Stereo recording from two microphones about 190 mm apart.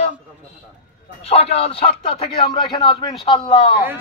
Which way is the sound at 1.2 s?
30° left (ahead or behind).